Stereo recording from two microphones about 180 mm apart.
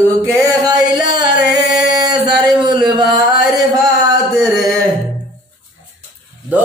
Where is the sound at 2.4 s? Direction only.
20° right (ahead or behind).